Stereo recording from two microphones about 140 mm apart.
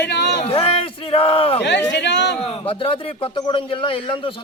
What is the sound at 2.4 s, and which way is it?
Speech, 40° left (ahead or behind).